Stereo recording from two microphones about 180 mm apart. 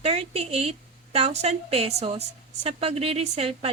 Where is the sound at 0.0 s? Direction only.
35° right (ahead or behind).